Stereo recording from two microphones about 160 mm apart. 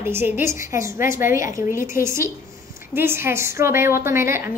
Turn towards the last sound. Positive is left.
turn(degrees=-15)  # may be behind; listen again after turning